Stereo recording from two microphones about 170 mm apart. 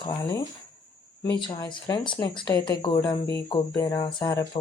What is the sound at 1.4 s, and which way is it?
Speech, 25° left (ahead or behind).